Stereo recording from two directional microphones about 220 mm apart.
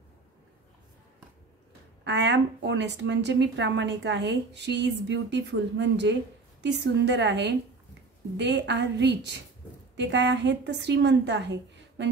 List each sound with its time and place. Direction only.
2.0 s a woman's voice: 50° right (ahead or behind)